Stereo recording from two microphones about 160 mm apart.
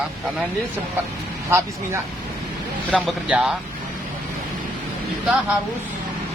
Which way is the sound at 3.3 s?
10° right (ahead or behind).